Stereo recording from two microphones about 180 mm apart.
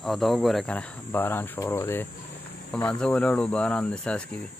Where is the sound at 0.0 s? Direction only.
Centre (ahead or behind).